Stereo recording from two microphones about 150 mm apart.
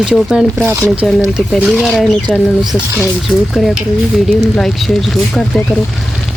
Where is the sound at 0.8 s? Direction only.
Centre (ahead or behind).